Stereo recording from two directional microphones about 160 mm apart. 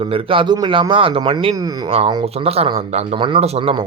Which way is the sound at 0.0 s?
35° right (ahead or behind).